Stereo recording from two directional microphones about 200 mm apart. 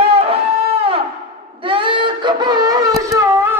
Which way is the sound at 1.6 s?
25° right (ahead or behind).